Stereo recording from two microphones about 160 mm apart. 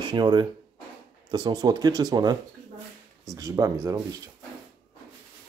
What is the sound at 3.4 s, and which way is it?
Speech, 20° right (ahead or behind).